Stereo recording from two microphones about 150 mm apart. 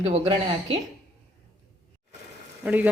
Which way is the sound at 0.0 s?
40° right (ahead or behind).